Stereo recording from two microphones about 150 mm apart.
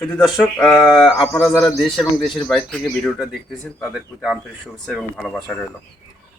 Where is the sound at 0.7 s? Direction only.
20° left (ahead or behind).